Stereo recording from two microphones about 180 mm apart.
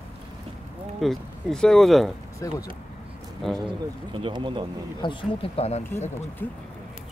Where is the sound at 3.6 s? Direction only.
30° right (ahead or behind).